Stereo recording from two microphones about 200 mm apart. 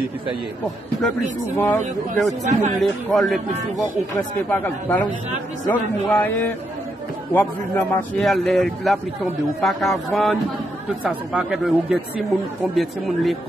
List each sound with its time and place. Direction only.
1.6 s speech: 5° left (ahead or behind)
4.4 s a man's voice: 10° left (ahead or behind)